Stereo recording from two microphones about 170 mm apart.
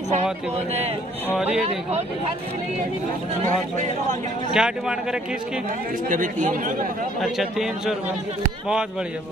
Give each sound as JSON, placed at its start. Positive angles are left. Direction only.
{"t": 1.3, "sound": "a man's voice", "side_deg": -5}
{"t": 4.6, "sound": "a man's voice", "side_deg": -5}
{"t": 6.0, "sound": "speech", "side_deg": -50}
{"t": 7.2, "sound": "a man's voice", "side_deg": 0}